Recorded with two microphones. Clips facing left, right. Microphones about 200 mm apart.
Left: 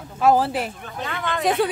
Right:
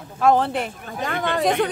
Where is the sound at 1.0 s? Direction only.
45° right (ahead or behind).